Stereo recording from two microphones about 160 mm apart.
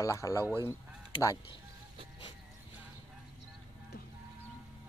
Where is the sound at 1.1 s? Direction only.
20° left (ahead or behind).